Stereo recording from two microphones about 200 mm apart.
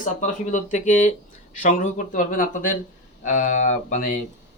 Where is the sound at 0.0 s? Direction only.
40° left (ahead or behind).